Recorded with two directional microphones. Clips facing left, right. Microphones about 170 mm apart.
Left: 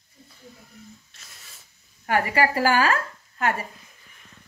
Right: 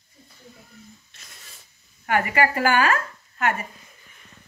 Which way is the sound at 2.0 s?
35° left (ahead or behind).